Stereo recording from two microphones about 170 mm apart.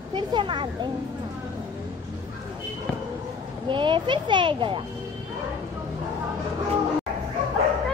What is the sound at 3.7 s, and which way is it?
A child's voice, 30° right (ahead or behind).